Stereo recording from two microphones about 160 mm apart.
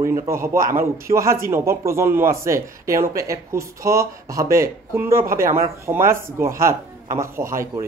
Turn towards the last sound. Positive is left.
turn(degrees=-20)  # may be behind; listen again after turning